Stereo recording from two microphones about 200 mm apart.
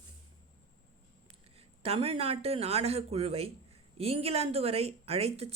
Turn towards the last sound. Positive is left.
turn(degrees=-30)  # may be behind; listen again after turning